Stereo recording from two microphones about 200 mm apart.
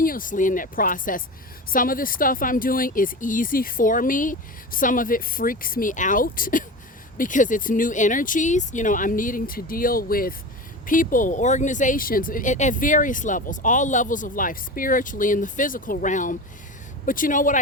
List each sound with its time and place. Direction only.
0.0 s speech: 45° left (ahead or behind)